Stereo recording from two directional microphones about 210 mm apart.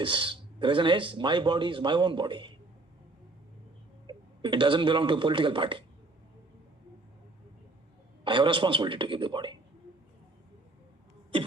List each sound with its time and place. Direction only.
0.0 s speech: 25° right (ahead or behind)
4.0 s speech: 20° right (ahead or behind)
8.2 s speech: 25° right (ahead or behind)